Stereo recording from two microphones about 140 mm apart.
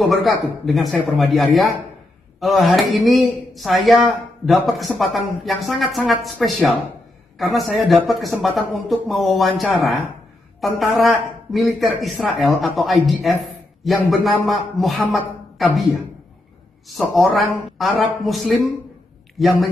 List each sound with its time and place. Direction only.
0.1 s a woman's voice: centre (ahead or behind)
15.5 s a sound: centre (ahead or behind)
16.8 s a woman's voice: centre (ahead or behind)